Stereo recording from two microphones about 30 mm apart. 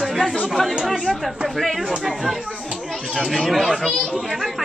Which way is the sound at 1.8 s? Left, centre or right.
Centre.